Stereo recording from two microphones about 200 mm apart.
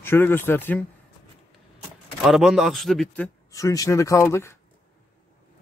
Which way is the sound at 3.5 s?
15° left (ahead or behind).